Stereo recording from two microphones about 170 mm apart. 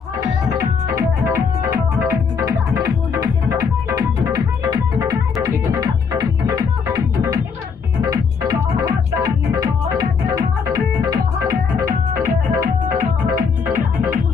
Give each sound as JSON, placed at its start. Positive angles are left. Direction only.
{"t": 0.3, "sound": "music", "side_deg": -20}
{"t": 8.0, "sound": "music", "side_deg": -20}